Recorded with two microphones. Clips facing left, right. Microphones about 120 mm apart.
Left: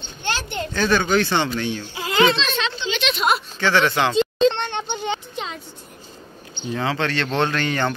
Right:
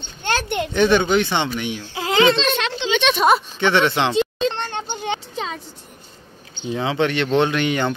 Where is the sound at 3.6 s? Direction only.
25° right (ahead or behind).